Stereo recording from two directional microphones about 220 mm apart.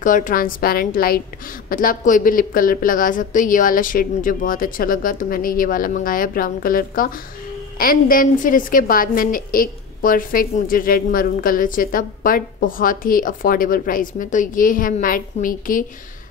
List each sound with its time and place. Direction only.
0.0 s a woman's voice: 35° left (ahead or behind)